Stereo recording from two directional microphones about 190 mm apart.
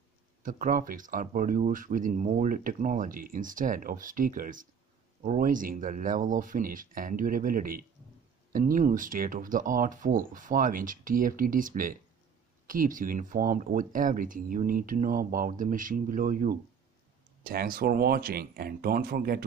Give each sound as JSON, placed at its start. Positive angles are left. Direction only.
{"t": 0.4, "sound": "speech", "side_deg": -45}